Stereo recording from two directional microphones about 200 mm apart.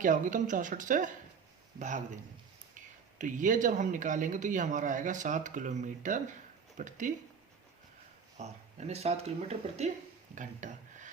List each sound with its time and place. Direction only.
0.0 s speech: 40° right (ahead or behind)
3.2 s speech: 40° right (ahead or behind)
8.4 s speech: 35° right (ahead or behind)